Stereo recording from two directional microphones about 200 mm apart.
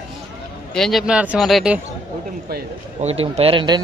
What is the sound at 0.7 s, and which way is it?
Speech, centre (ahead or behind).